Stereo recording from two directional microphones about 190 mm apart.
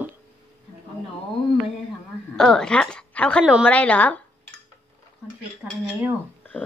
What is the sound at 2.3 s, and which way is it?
A woman's voice, 5° left (ahead or behind).